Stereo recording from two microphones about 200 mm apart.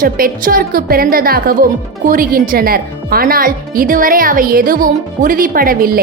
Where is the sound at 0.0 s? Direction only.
45° right (ahead or behind).